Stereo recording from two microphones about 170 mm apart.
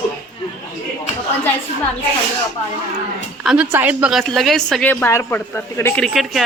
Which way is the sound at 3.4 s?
5° right (ahead or behind).